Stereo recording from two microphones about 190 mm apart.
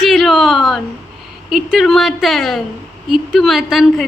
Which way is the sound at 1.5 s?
Centre (ahead or behind).